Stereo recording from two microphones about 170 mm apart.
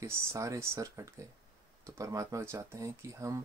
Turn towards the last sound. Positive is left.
turn(degrees=-15)  # may be behind; listen again after turning